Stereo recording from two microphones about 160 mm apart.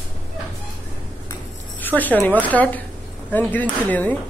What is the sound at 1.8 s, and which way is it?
A woman's voice, 10° left (ahead or behind).